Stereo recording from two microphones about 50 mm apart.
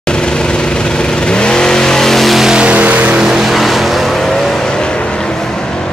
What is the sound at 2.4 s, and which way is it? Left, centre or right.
Vehicle, centre.